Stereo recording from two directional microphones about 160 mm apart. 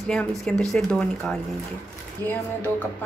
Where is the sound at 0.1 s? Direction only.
5° left (ahead or behind).